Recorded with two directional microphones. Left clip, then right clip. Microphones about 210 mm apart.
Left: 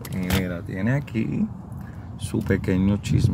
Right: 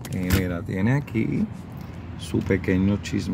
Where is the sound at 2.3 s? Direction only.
5° right (ahead or behind).